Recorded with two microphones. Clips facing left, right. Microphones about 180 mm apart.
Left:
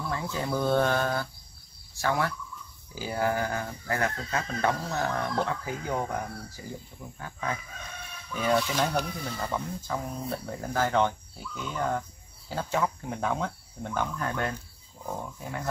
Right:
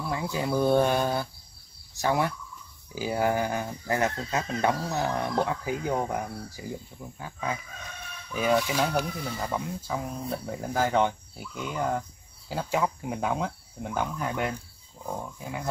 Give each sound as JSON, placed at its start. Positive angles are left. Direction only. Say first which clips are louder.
{"t": 0.0, "sound": "speech", "louder": "right 2 dB", "side_deg": -15}